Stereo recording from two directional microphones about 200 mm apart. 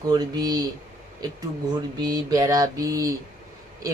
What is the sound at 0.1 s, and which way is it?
Speech, 20° right (ahead or behind).